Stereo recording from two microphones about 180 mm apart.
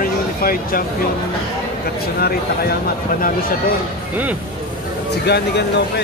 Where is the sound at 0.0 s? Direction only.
55° left (ahead or behind).